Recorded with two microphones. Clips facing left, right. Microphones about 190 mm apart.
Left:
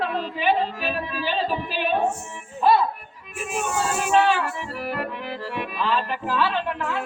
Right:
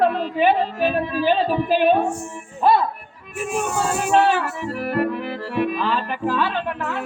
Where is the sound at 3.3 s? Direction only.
45° right (ahead or behind).